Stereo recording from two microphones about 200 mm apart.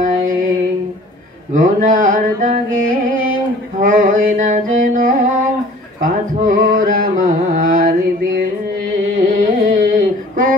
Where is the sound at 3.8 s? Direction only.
40° right (ahead or behind).